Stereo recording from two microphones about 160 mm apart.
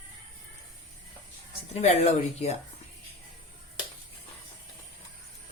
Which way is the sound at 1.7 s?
45° left (ahead or behind).